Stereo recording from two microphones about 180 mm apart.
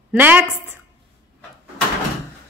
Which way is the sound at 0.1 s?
10° right (ahead or behind).